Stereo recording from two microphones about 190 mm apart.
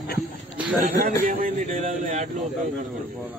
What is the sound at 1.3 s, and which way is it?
Speech, 45° right (ahead or behind).